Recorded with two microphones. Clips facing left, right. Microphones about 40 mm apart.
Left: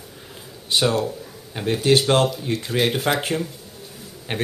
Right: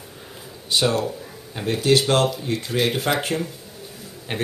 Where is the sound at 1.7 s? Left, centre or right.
Left.